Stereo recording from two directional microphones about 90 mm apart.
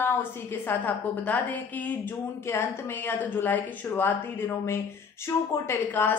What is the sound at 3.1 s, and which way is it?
A woman's voice, 25° left (ahead or behind).